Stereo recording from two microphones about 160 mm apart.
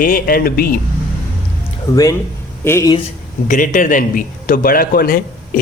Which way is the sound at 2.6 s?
15° left (ahead or behind).